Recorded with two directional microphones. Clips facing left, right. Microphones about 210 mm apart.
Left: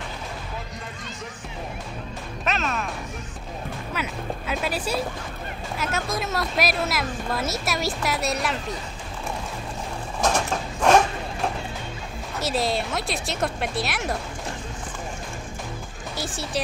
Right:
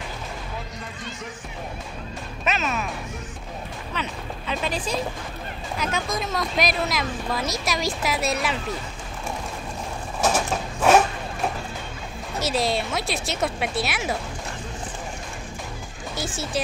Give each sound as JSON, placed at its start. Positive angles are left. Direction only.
{"t": 2.4, "sound": "speech", "side_deg": -5}
{"t": 3.9, "sound": "speech", "side_deg": 5}
{"t": 10.2, "sound": "a sound", "side_deg": -5}
{"t": 12.4, "sound": "speech", "side_deg": 0}
{"t": 16.2, "sound": "speech", "side_deg": 0}